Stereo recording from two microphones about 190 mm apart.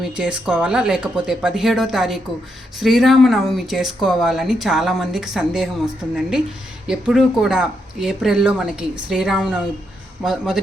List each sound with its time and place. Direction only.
0.0 s speech: 5° right (ahead or behind)